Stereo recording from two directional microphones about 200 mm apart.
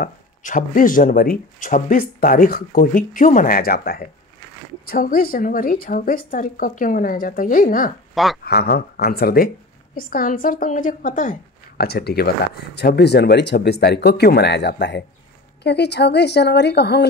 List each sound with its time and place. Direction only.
0.0 s speech: 40° left (ahead or behind)
8.1 s speech: centre (ahead or behind)
8.5 s speech: 50° left (ahead or behind)
11.8 s speech: 50° left (ahead or behind)